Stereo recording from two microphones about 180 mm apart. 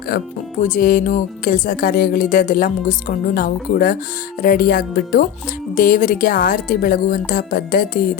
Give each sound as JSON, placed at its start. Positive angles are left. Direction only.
{"t": 0.1, "sound": "music", "side_deg": 55}
{"t": 4.4, "sound": "speech", "side_deg": 55}
{"t": 5.7, "sound": "music", "side_deg": 50}